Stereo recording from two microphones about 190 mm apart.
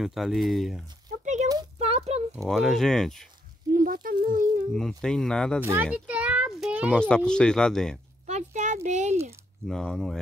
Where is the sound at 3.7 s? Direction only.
45° right (ahead or behind).